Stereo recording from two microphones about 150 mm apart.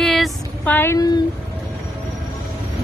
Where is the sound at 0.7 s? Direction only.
20° left (ahead or behind).